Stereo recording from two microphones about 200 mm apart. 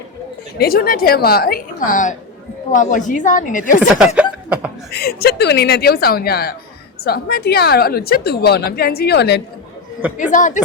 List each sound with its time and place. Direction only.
0.6 s a woman's voice: 50° left (ahead or behind)
3.9 s speech: 5° right (ahead or behind)
4.9 s a woman's voice: 55° left (ahead or behind)
10.3 s a woman's voice: 40° left (ahead or behind)